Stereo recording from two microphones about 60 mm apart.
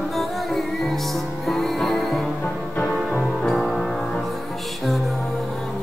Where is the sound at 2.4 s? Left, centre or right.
Left.